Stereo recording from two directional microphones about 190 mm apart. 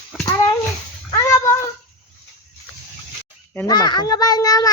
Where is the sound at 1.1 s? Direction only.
15° left (ahead or behind).